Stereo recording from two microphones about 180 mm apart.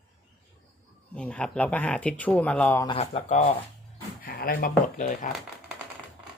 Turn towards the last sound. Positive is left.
turn(degrees=45)  # may be behind; listen again after turning